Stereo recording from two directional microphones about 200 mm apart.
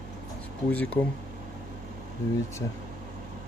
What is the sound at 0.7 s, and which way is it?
Speech, 5° left (ahead or behind).